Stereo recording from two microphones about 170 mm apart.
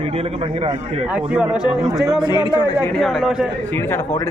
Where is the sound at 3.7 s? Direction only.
15° left (ahead or behind).